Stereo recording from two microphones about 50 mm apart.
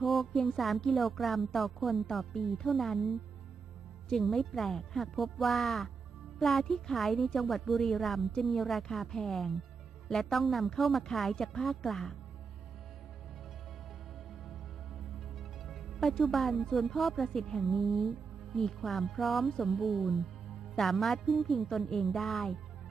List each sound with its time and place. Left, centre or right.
0.0 s a woman's voice: centre
15.1 s speech: centre